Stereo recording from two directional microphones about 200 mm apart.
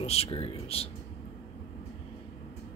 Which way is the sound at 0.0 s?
30° left (ahead or behind).